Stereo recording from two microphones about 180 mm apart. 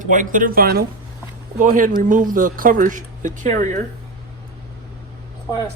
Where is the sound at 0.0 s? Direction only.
45° right (ahead or behind).